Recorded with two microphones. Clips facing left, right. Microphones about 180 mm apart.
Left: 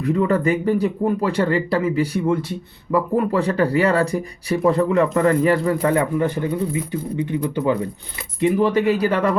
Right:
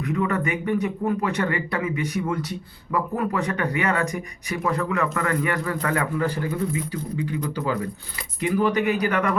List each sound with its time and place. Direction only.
0.0 s speech: 30° left (ahead or behind)